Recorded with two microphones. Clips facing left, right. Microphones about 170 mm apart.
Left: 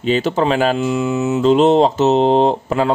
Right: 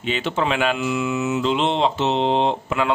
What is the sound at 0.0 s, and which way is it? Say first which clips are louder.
Speech: left 7 dB; 35° left (ahead or behind).